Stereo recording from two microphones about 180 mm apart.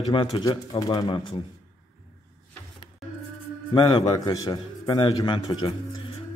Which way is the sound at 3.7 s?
25° left (ahead or behind).